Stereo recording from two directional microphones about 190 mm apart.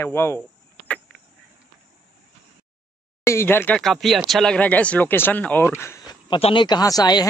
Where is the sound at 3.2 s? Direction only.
15° left (ahead or behind).